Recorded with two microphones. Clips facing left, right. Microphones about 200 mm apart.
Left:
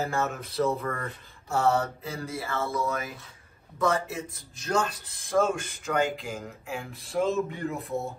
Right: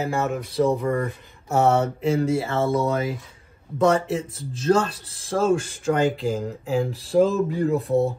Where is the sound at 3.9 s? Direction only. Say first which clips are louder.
Right 8 dB; 30° right (ahead or behind).